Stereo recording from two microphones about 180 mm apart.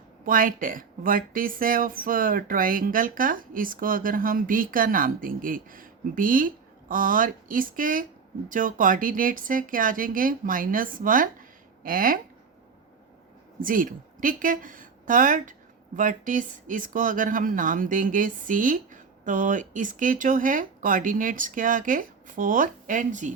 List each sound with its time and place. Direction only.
0.3 s speech: 50° right (ahead or behind)
13.6 s a woman's voice: 50° right (ahead or behind)